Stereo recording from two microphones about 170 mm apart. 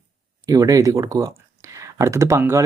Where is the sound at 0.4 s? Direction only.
20° right (ahead or behind).